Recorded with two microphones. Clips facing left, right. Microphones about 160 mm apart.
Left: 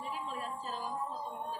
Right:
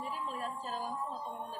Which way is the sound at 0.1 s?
45° right (ahead or behind).